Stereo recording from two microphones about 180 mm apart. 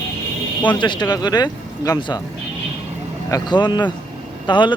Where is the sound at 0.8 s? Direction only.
25° left (ahead or behind).